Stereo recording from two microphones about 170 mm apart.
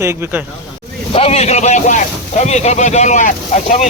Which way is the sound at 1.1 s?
35° left (ahead or behind).